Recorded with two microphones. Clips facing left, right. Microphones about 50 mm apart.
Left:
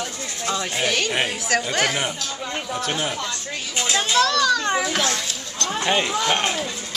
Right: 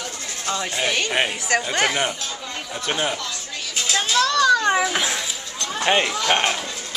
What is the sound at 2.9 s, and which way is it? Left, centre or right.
Speech, centre.